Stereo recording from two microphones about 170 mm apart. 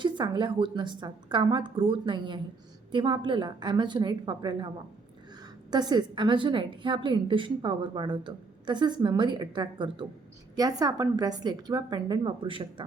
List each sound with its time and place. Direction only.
0.0 s a woman's voice: 30° right (ahead or behind)
5.7 s a woman's voice: 25° right (ahead or behind)